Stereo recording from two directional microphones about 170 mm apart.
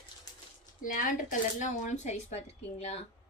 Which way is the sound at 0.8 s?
50° left (ahead or behind).